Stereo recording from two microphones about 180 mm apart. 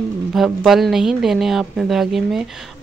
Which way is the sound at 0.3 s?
Centre (ahead or behind).